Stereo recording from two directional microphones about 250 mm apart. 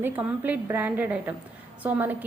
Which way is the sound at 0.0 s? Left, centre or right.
Centre.